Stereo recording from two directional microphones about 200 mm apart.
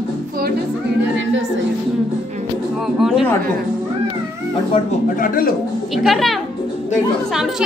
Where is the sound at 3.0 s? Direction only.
Centre (ahead or behind).